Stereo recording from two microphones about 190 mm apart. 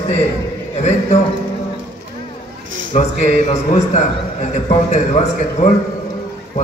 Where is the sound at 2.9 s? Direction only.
35° left (ahead or behind).